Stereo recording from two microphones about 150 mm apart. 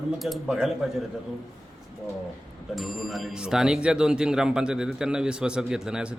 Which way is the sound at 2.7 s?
Centre (ahead or behind).